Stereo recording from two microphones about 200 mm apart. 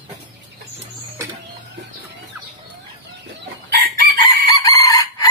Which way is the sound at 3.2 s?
50° right (ahead or behind).